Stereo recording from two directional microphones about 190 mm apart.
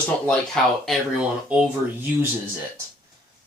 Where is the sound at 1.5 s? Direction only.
5° right (ahead or behind).